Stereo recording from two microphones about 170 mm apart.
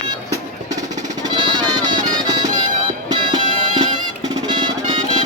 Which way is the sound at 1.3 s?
25° right (ahead or behind).